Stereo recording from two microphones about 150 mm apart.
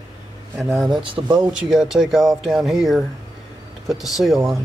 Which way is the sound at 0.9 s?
35° right (ahead or behind).